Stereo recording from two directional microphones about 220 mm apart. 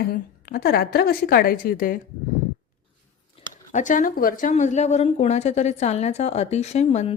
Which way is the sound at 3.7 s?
35° left (ahead or behind).